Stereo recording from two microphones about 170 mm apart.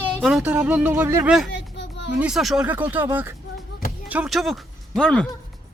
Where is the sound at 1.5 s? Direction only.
90° left.